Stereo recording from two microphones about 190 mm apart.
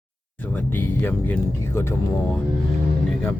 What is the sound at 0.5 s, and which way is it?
Speech, 10° left (ahead or behind).